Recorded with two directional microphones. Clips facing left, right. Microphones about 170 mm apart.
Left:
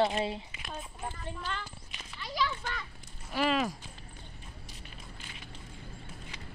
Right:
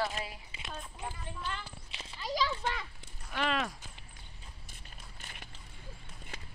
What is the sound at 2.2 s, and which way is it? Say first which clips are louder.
Children playing: even; 40° right (ahead or behind).